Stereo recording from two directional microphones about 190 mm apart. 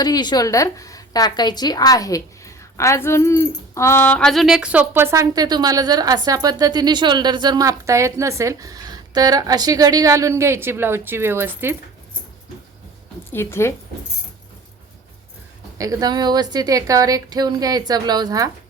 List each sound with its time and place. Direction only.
0.0 s a woman's voice: 20° left (ahead or behind); by 11.8 s 10° right (ahead or behind)
13.3 s a woman's voice: 15° left (ahead or behind)
15.8 s a woman's voice: 20° right (ahead or behind)